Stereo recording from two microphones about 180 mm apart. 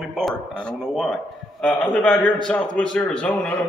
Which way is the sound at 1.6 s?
5° left (ahead or behind).